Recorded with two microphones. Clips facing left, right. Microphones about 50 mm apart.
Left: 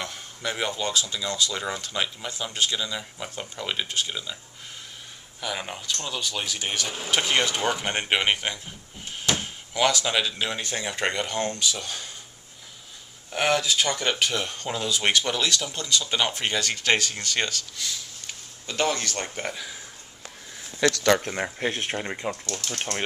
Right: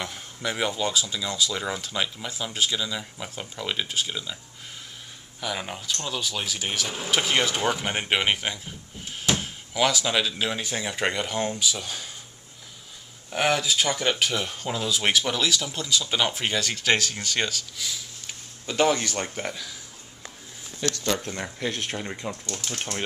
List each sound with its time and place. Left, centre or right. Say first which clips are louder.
0.0 s speech: right 1 dB; centre
5.4 s speech: right 1 dB; centre
13.3 s speech: even; centre
21.1 s speech: left 6 dB; left
21.4 s speech: left 3 dB; left
22.7 s speech: left 1 dB; centre